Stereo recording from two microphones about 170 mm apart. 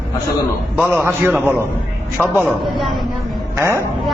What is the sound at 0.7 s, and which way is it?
A man's voice, 5° right (ahead or behind).